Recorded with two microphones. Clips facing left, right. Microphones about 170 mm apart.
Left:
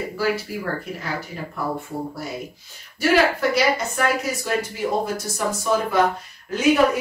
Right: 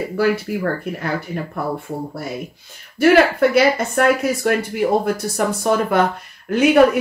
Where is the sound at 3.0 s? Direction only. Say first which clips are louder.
Right 6 dB; 55° right (ahead or behind).